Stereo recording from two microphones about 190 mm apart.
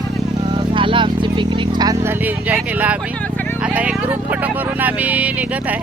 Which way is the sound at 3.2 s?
10° left (ahead or behind).